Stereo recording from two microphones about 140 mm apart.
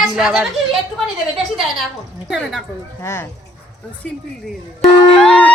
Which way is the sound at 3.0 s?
20° left (ahead or behind).